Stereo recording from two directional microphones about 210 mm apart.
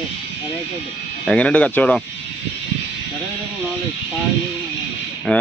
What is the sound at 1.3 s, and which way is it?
Speech, 5° left (ahead or behind).